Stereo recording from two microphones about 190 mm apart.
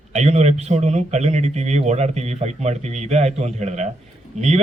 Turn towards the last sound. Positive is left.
turn(degrees=-35)  # may be behind; listen again after turning